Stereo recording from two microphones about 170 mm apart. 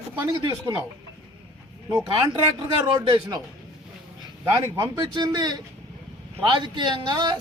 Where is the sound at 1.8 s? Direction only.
10° right (ahead or behind).